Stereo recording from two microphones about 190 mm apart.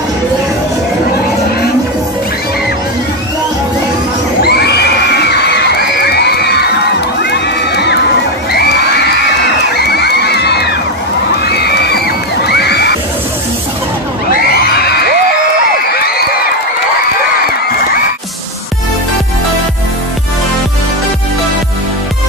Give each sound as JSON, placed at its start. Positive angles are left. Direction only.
{"t": 4.4, "sound": "children shouting", "side_deg": 55}
{"t": 7.2, "sound": "crowd", "side_deg": 60}
{"t": 8.5, "sound": "children shouting", "side_deg": 55}
{"t": 9.8, "sound": "music", "side_deg": 60}
{"t": 11.4, "sound": "neigh", "side_deg": 60}
{"t": 12.4, "sound": "children shouting", "side_deg": 60}
{"t": 14.3, "sound": "children shouting", "side_deg": 55}